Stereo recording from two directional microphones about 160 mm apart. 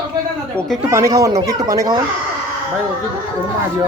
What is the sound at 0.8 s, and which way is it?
Speech, 20° right (ahead or behind).